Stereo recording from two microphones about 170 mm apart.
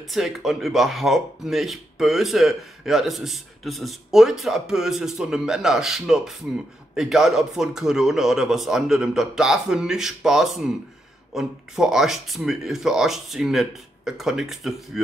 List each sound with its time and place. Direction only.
0.1 s speech: centre (ahead or behind)